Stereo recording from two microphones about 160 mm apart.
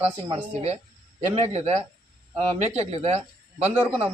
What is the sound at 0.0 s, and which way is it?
Speech, 35° right (ahead or behind).